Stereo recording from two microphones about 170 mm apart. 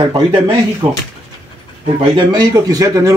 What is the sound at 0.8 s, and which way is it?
Speech, 10° right (ahead or behind).